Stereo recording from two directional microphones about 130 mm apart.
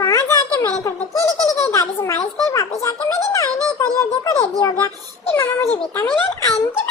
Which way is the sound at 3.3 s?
25° left (ahead or behind).